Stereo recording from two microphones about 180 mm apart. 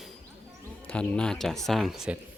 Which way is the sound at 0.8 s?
5° left (ahead or behind).